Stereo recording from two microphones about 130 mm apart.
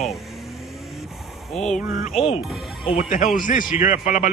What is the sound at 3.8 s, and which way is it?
Speech, 70° left (ahead or behind).